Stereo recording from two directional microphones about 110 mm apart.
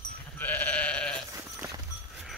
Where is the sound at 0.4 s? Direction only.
15° left (ahead or behind).